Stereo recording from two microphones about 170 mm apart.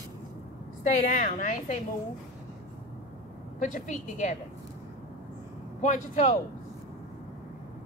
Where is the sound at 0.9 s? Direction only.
50° left (ahead or behind).